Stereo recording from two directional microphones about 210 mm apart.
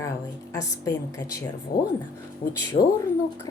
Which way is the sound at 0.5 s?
15° left (ahead or behind).